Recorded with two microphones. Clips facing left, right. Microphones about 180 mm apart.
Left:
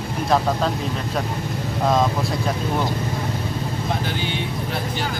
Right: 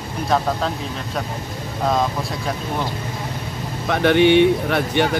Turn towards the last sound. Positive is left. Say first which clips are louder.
# right 7 dB
turn(degrees=-70)  # may be behind; listen again after turning